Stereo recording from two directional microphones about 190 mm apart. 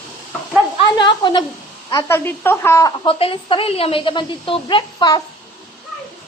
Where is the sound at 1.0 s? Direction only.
25° left (ahead or behind).